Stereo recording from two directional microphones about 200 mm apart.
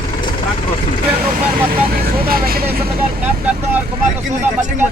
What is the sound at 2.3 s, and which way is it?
Speech, 50° right (ahead or behind).